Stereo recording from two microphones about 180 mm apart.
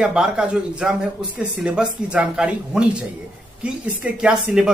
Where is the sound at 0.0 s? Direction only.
5° right (ahead or behind).